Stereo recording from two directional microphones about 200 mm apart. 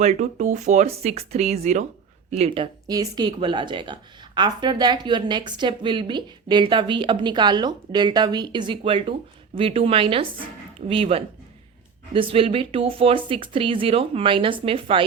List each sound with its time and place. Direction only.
0.0 s speech: 35° right (ahead or behind)
2.8 s speech: 20° right (ahead or behind)